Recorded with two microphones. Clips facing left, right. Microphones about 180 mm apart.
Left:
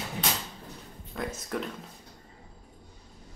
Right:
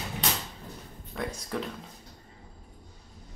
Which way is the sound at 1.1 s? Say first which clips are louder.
Even; centre (ahead or behind).